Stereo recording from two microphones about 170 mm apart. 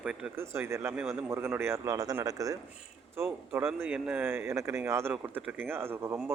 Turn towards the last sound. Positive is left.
turn(degrees=-15)  # may be behind; listen again after turning